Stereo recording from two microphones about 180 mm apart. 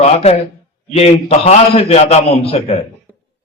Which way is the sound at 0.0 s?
35° left (ahead or behind).